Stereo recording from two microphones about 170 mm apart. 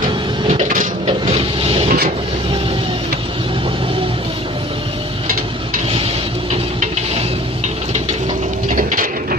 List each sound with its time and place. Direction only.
0.7 s a sound: 50° right (ahead or behind)
1.3 s vehicle: 35° right (ahead or behind)
8.7 s mechanisms: 50° right (ahead or behind)